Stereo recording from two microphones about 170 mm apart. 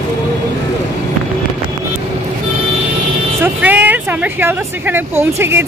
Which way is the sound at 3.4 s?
10° right (ahead or behind).